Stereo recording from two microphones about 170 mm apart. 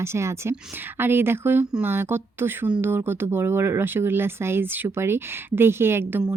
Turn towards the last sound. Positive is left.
turn(degrees=-10)  # may be behind; listen again after turning